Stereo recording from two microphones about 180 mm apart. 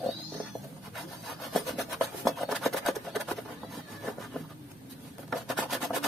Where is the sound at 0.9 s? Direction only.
Centre (ahead or behind).